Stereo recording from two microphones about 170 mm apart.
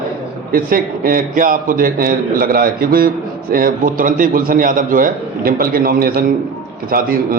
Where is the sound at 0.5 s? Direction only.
55° right (ahead or behind).